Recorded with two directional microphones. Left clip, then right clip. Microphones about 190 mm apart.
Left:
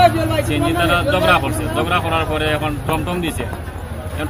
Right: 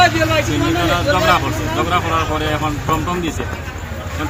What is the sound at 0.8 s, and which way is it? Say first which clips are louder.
Speech: even; 20° left (ahead or behind).